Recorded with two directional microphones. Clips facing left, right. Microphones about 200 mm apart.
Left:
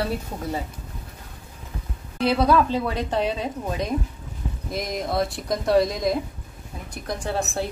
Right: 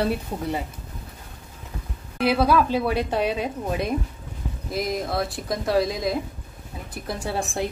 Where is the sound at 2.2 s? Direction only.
5° right (ahead or behind).